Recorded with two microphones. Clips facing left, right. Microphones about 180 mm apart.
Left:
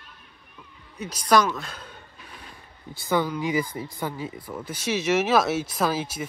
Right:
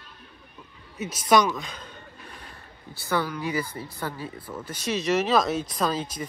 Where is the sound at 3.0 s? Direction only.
15° left (ahead or behind).